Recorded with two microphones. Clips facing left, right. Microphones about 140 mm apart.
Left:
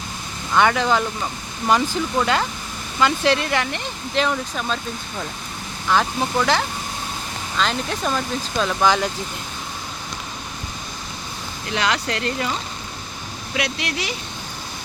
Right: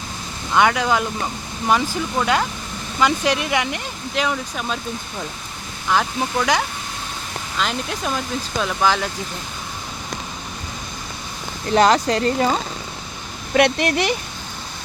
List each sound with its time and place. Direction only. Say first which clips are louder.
0.5 s speech: even; 5° right (ahead or behind)
5.9 s speech: even; 5° right (ahead or behind)
11.7 s speech: right 8 dB; 40° right (ahead or behind)
13.5 s speech: right 9 dB; 55° right (ahead or behind)